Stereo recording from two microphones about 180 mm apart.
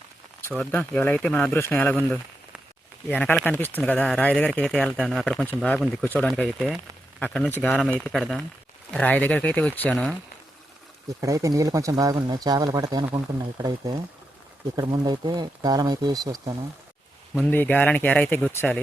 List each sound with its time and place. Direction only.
0.5 s speech: 5° left (ahead or behind)
3.1 s speech: 10° left (ahead or behind)
11.2 s speech: 20° right (ahead or behind)
17.4 s speech: 10° left (ahead or behind)